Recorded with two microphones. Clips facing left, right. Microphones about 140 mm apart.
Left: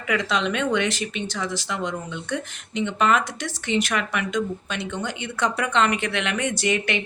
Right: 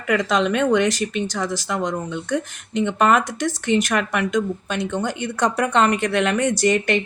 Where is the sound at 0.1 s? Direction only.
45° right (ahead or behind).